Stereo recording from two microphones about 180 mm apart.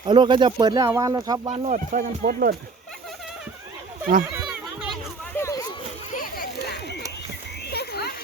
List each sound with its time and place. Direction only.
0.0 s speech: 25° right (ahead or behind)
1.5 s speech: 40° right (ahead or behind)
4.0 s speech: 50° right (ahead or behind)
5.4 s a sound: 15° left (ahead or behind)
6.1 s a sound: 55° left (ahead or behind)
7.7 s frog: 65° left (ahead or behind)